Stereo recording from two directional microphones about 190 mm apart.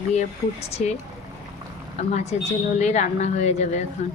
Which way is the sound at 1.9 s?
35° left (ahead or behind).